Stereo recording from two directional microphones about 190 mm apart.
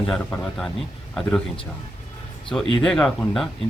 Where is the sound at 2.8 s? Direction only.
5° left (ahead or behind).